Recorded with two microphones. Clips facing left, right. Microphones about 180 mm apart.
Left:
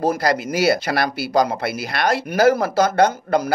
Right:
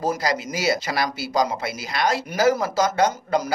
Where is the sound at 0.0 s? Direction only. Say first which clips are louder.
Left 4 dB; 60° left (ahead or behind).